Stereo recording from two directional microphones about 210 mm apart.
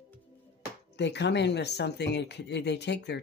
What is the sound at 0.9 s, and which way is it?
Speech, 55° left (ahead or behind).